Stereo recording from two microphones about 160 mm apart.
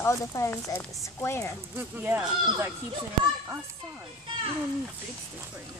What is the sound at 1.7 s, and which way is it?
Speech, 10° right (ahead or behind).